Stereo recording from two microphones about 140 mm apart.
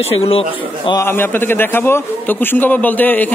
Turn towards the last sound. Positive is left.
turn(degrees=10)  # may be behind; listen again after turning